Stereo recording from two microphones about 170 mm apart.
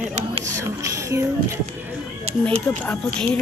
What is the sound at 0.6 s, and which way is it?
Speech, 15° right (ahead or behind).